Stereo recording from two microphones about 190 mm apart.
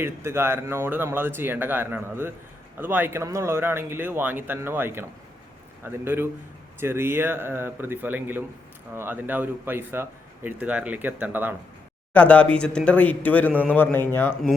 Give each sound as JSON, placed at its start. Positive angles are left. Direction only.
{"t": 0.0, "sound": "a man's voice", "side_deg": -15}
{"t": 12.1, "sound": "speech", "side_deg": 5}